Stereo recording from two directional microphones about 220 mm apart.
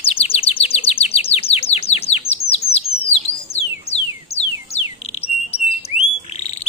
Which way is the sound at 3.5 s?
30° left (ahead or behind).